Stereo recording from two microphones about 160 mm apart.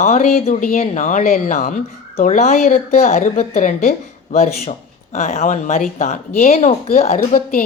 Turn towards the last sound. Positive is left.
turn(degrees=40)  # may be behind; listen again after turning